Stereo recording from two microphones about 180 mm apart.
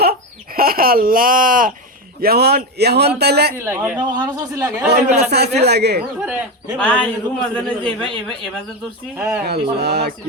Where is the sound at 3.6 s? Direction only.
10° right (ahead or behind).